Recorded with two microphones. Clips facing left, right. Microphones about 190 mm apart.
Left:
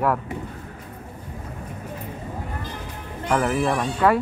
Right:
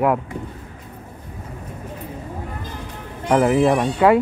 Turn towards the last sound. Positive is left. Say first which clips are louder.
# right 5 dB
turn(degrees=-20)  # may be behind; listen again after turning